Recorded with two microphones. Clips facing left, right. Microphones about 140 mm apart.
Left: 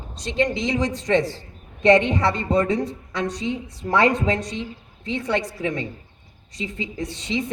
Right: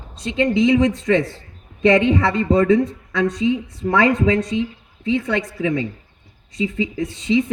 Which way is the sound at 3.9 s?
35° left (ahead or behind).